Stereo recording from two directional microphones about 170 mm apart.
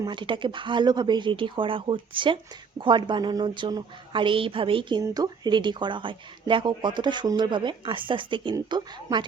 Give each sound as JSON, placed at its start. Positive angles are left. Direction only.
{"t": 0.0, "sound": "speech", "side_deg": -30}